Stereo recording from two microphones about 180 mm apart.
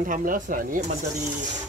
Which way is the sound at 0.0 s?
50° right (ahead or behind).